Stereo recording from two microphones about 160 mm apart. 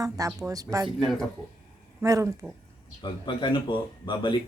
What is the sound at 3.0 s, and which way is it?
Speech, 30° left (ahead or behind).